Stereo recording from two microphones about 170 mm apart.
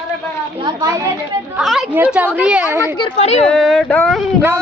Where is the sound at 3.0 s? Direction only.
40° left (ahead or behind).